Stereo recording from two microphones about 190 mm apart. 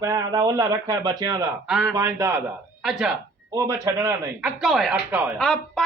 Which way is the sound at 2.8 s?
5° right (ahead or behind).